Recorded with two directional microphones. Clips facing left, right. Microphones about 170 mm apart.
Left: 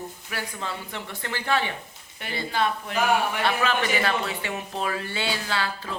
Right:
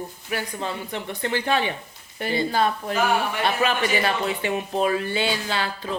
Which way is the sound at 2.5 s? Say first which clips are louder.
Right 3 dB; 40° right (ahead or behind).